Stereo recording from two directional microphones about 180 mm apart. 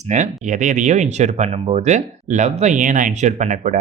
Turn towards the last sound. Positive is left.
turn(degrees=-40)  # may be behind; listen again after turning